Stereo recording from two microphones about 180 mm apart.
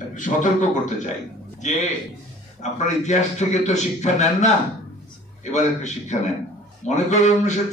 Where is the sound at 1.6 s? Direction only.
40° left (ahead or behind).